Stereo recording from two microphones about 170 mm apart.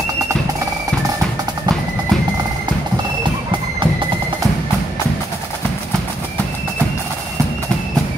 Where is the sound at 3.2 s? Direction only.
30° right (ahead or behind).